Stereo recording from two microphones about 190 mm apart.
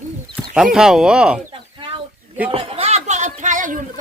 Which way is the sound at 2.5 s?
30° right (ahead or behind).